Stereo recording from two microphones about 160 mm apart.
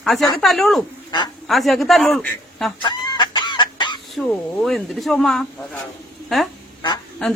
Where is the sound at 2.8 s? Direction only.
30° left (ahead or behind).